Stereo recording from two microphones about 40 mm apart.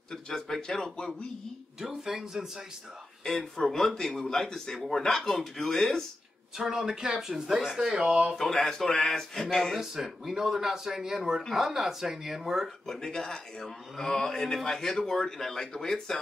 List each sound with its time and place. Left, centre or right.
0.1 s a man's voice: centre
1.8 s speech: centre
3.3 s a man's voice: centre
6.6 s speech: centre
8.4 s a man's voice: centre
9.9 s speech: centre
12.8 s a man's voice: centre